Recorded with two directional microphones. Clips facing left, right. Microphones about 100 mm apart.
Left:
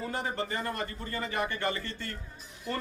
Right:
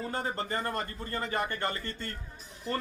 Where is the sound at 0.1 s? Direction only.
35° right (ahead or behind).